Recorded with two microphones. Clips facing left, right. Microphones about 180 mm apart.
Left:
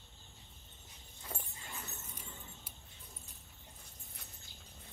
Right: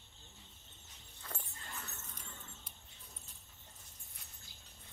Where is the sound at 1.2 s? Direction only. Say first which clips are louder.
Left 2 dB; 10° left (ahead or behind).